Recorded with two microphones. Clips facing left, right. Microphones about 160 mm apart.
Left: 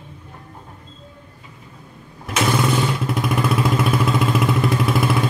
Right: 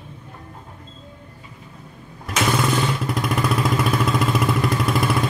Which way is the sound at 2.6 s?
Centre (ahead or behind).